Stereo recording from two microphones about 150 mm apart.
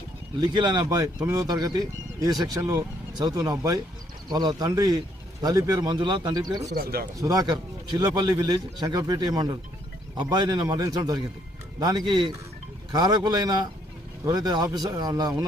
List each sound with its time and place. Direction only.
0.3 s speech: 30° right (ahead or behind)
6.7 s speech: 85° right
7.2 s speech: 25° right (ahead or behind)